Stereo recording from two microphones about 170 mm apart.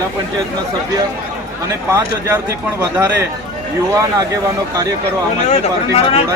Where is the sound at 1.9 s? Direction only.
15° right (ahead or behind).